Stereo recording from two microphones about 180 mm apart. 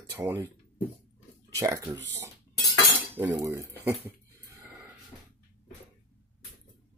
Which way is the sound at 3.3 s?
15° right (ahead or behind).